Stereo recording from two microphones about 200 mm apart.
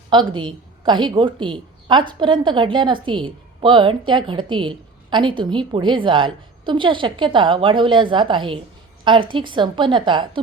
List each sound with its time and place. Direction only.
0.1 s a woman's voice: 25° right (ahead or behind)